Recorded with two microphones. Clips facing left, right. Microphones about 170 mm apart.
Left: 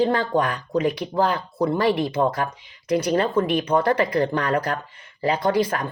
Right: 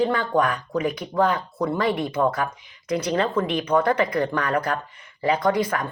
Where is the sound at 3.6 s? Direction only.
30° left (ahead or behind).